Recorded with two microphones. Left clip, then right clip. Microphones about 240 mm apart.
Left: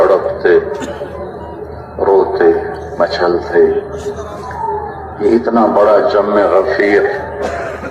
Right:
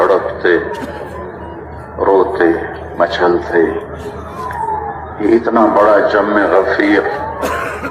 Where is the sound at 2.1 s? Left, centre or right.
Right.